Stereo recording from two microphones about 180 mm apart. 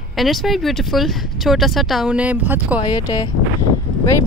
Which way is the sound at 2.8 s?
25° left (ahead or behind).